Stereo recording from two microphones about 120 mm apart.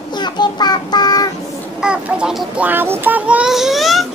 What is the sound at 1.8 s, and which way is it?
Speech, 10° right (ahead or behind).